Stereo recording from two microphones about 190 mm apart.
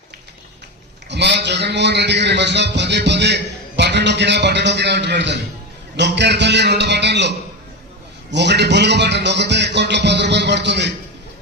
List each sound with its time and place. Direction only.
1.1 s a man's voice: 65° right (ahead or behind)